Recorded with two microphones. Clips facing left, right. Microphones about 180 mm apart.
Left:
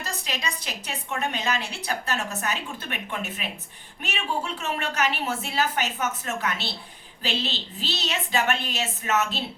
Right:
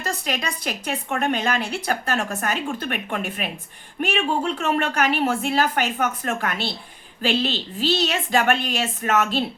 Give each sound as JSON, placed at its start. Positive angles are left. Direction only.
{"t": 0.0, "sound": "a woman's voice", "side_deg": -55}